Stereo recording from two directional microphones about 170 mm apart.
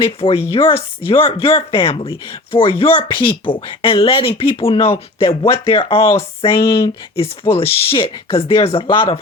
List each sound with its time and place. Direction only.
0.2 s speech: 35° left (ahead or behind)